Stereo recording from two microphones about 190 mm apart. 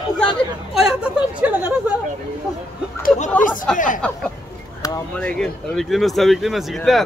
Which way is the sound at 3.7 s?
45° left (ahead or behind).